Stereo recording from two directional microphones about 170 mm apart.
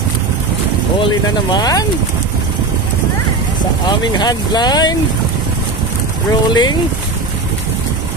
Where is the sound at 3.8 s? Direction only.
25° left (ahead or behind).